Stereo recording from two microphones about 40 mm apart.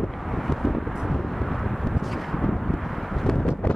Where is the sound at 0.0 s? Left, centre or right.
Centre.